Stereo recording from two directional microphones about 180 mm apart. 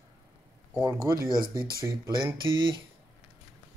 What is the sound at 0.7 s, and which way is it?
Speech, 20° right (ahead or behind).